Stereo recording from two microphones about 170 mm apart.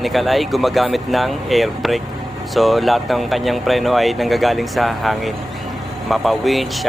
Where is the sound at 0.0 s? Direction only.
Centre (ahead or behind).